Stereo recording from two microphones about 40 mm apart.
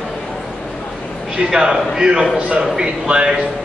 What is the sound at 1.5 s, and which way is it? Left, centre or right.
A man's voice, centre.